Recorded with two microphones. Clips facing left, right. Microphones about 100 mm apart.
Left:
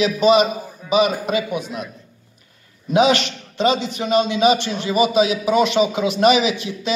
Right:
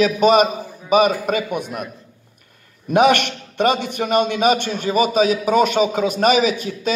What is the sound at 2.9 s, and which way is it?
A man's voice, 55° right (ahead or behind).